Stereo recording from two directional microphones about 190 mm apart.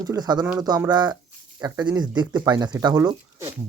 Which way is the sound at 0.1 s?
20° right (ahead or behind).